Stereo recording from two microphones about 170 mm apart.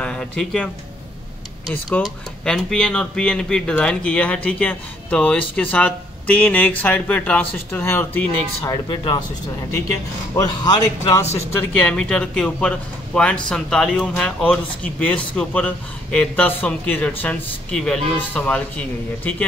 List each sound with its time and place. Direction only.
0.0 s speech: 5° left (ahead or behind)
1.7 s speech: 5° left (ahead or behind)
8.6 s a man's voice: 25° left (ahead or behind)
10.3 s a man's voice: 25° left (ahead or behind)
11.6 s speech: 5° left (ahead or behind)